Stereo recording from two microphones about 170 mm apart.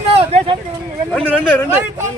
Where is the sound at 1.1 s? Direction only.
10° left (ahead or behind).